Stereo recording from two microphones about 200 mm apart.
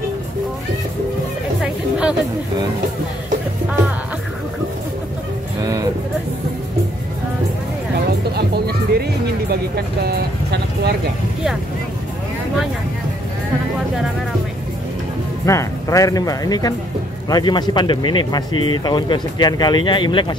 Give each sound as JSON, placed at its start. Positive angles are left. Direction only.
{"t": 1.6, "sound": "chatter", "side_deg": -5}
{"t": 5.6, "sound": "music", "side_deg": -15}
{"t": 8.4, "sound": "music", "side_deg": -55}
{"t": 9.5, "sound": "speech", "side_deg": -55}
{"t": 15.4, "sound": "speech", "side_deg": 15}